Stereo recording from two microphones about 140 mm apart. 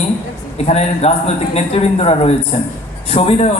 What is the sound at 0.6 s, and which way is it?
A man's voice, 45° left (ahead or behind).